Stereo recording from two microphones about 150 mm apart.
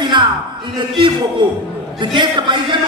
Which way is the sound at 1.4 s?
30° right (ahead or behind).